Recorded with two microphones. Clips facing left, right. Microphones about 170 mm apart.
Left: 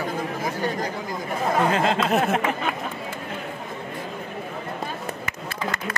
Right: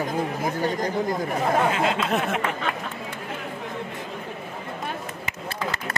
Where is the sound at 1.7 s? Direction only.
40° left (ahead or behind).